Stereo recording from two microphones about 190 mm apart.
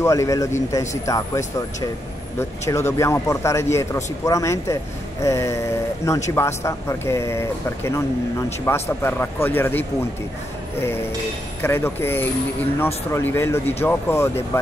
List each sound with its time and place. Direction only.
0.0 s speech: 15° left (ahead or behind)